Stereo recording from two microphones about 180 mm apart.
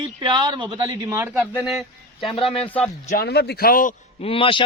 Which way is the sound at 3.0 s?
55° left (ahead or behind).